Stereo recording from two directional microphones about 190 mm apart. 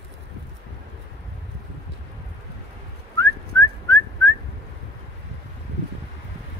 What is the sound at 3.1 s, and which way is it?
Whistling, 15° left (ahead or behind).